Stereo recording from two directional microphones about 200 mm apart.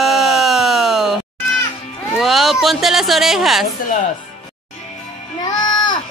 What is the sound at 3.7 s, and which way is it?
Speech, 40° left (ahead or behind).